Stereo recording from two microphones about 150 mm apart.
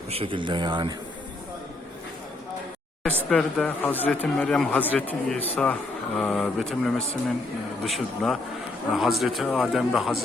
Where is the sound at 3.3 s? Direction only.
5° left (ahead or behind).